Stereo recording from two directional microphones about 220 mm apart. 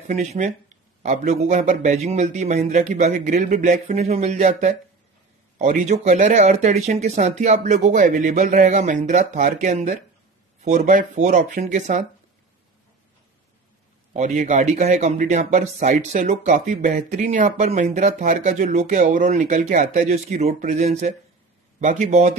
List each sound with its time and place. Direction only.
0.1 s speech: 35° right (ahead or behind)
14.1 s speech: 35° right (ahead or behind)